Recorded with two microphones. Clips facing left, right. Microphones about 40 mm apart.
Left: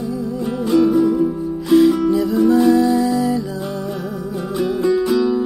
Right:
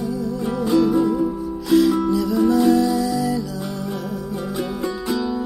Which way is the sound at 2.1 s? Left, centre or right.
Left.